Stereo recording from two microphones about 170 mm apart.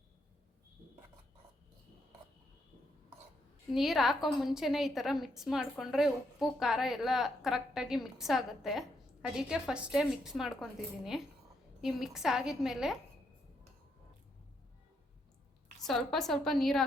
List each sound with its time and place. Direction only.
3.7 s a woman's voice: centre (ahead or behind)
15.8 s a woman's voice: centre (ahead or behind)